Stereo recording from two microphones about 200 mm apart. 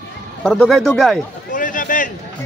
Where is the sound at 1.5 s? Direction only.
45° left (ahead or behind).